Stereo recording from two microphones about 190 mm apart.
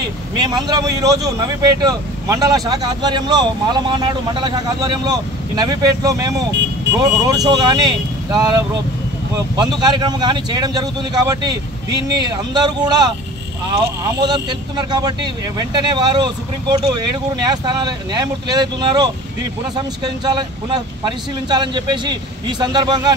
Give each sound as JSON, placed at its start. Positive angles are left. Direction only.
{"t": 0.4, "sound": "speech", "side_deg": -20}
{"t": 9.6, "sound": "speech", "side_deg": -20}
{"t": 14.2, "sound": "speech", "side_deg": -20}